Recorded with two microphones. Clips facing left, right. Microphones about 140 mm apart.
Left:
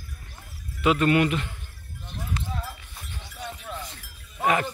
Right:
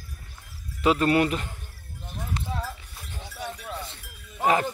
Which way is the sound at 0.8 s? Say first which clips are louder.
Even; 35° right (ahead or behind).